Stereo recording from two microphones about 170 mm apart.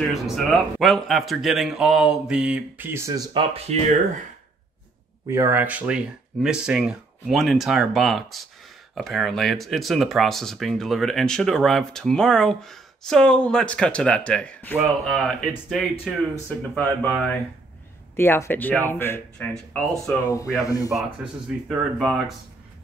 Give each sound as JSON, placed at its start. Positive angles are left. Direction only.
{"t": 0.1, "sound": "speech", "side_deg": 0}
{"t": 3.5, "sound": "speech", "side_deg": -40}
{"t": 5.3, "sound": "speech", "side_deg": -15}
{"t": 14.8, "sound": "speech", "side_deg": 0}
{"t": 20.6, "sound": "speech", "side_deg": 20}
{"t": 20.9, "sound": "speech", "side_deg": 0}